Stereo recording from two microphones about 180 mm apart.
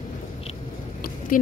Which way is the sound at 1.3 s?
50° left (ahead or behind).